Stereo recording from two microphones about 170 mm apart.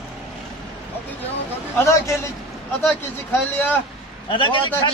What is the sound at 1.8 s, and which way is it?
Speech, 15° left (ahead or behind).